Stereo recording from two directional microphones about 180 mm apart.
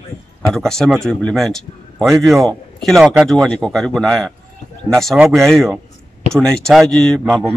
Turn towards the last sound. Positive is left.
turn(degrees=0)  # may be behind; listen again after turning